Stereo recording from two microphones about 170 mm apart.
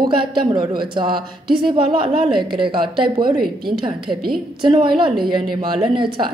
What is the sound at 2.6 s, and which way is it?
Speech, 30° right (ahead or behind).